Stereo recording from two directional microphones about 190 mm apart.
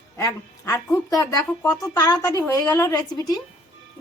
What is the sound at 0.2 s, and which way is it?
A woman's voice, 15° left (ahead or behind).